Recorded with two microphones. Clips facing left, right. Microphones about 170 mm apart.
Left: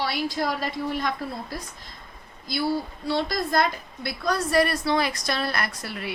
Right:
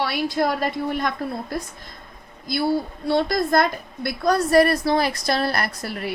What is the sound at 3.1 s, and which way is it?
A woman's voice, 50° right (ahead or behind).